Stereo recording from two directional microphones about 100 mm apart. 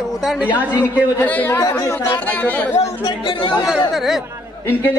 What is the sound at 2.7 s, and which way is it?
Speech, 75° left (ahead or behind).